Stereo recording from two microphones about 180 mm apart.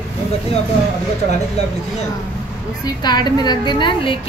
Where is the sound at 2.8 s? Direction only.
20° left (ahead or behind).